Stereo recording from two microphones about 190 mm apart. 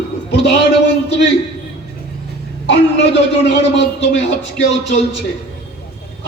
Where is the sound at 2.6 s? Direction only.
65° left (ahead or behind).